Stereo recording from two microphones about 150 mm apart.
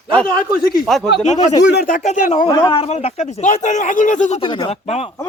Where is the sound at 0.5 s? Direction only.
90° left.